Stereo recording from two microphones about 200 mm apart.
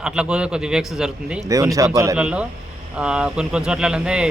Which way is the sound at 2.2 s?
5° right (ahead or behind).